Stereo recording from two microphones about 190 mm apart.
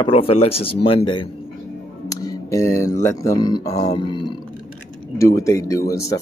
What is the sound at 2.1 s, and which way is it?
Speech, 15° left (ahead or behind).